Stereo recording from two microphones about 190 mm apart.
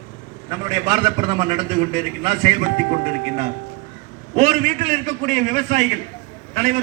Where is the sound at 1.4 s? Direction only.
40° right (ahead or behind).